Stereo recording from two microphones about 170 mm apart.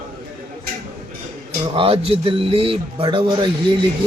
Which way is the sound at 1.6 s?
30° right (ahead or behind).